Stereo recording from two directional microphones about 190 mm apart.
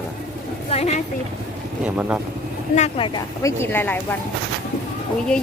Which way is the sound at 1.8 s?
5° right (ahead or behind).